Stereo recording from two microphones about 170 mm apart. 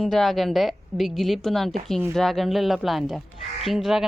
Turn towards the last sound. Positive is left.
turn(degrees=0)  # may be behind; listen again after turning